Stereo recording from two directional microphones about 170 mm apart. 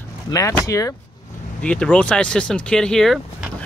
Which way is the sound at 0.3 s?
20° left (ahead or behind).